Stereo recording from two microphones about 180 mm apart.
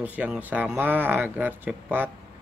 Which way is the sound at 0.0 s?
10° right (ahead or behind).